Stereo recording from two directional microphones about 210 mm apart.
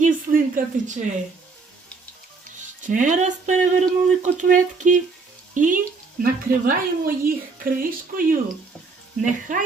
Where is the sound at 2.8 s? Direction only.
35° right (ahead or behind).